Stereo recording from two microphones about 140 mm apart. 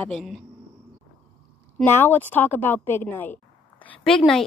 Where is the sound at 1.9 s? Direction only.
15° left (ahead or behind).